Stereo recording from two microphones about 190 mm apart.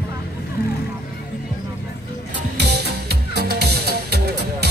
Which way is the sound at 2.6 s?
60° right (ahead or behind).